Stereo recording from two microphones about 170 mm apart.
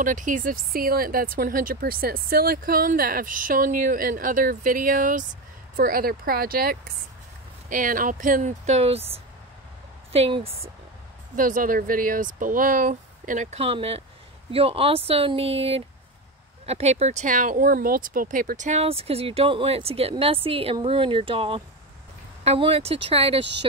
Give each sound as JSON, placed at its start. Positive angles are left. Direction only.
{"t": 0.0, "sound": "speech", "side_deg": -50}
{"t": 11.3, "sound": "speech", "side_deg": -55}